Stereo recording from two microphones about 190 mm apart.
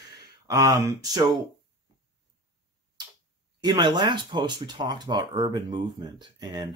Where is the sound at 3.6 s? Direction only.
20° right (ahead or behind).